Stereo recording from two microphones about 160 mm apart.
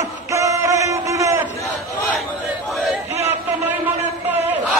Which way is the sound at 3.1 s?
40° left (ahead or behind).